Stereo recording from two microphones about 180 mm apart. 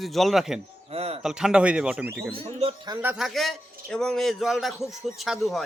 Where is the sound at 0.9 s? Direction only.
35° right (ahead or behind).